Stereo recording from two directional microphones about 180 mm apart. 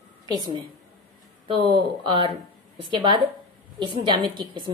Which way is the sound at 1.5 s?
25° right (ahead or behind).